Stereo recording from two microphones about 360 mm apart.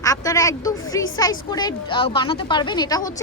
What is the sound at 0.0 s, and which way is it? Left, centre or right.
A woman's voice, centre.